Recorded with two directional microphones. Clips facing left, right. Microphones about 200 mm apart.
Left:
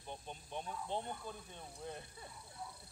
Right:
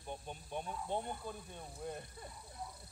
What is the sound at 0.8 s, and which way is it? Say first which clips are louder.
Speech: right 2 dB; 10° right (ahead or behind).